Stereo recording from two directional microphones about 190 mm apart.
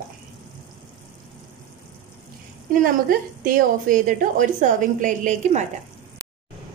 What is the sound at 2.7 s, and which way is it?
A woman's voice, 45° right (ahead or behind).